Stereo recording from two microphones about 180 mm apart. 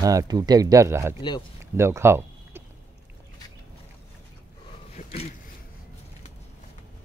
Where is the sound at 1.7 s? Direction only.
15° right (ahead or behind).